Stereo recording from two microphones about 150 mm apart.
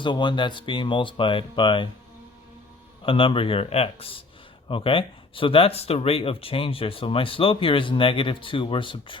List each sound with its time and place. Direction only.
0.0 s speech: 30° left (ahead or behind)
3.0 s speech: 35° left (ahead or behind)